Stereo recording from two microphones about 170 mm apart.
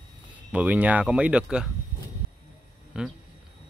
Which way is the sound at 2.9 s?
5° right (ahead or behind).